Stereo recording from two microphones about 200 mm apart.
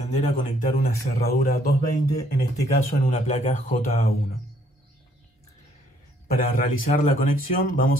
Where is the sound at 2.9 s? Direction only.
35° left (ahead or behind).